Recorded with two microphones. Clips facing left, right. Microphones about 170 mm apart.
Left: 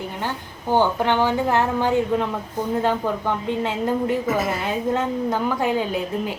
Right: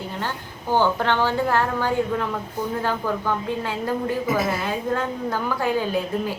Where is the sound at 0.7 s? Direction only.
15° left (ahead or behind).